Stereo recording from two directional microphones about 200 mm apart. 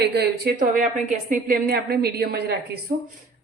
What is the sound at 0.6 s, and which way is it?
A woman's voice, 40° right (ahead or behind).